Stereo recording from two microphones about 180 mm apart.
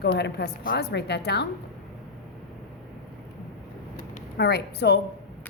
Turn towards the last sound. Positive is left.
turn(degrees=65)  # may be behind; listen again after turning